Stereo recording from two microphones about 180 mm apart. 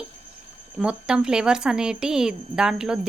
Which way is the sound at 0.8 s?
5° right (ahead or behind).